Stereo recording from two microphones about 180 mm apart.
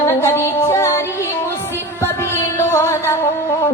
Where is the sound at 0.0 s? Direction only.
15° left (ahead or behind).